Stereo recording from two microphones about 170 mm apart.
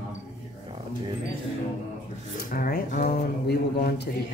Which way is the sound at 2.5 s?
60° left (ahead or behind).